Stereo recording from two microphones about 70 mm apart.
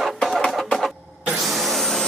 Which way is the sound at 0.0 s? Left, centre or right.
Centre.